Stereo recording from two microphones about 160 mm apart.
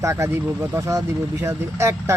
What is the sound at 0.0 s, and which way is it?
Speech, 15° right (ahead or behind).